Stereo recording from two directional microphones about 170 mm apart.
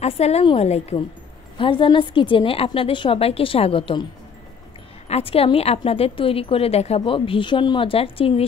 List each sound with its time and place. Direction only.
0.0 s a woman's voice: 40° left (ahead or behind)